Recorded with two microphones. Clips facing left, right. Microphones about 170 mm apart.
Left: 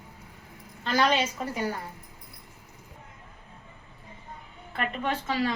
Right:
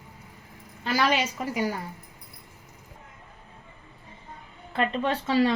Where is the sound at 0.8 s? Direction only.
10° right (ahead or behind).